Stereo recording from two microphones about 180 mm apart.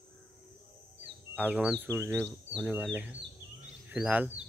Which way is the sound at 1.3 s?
5° right (ahead or behind).